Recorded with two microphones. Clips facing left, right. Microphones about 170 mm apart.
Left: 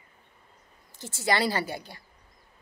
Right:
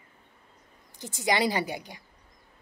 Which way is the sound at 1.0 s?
15° right (ahead or behind).